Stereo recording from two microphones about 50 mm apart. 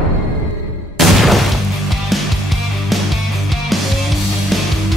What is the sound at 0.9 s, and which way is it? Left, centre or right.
Music, centre.